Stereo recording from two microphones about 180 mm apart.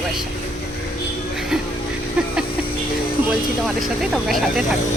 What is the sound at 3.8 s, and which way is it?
Speech, centre (ahead or behind).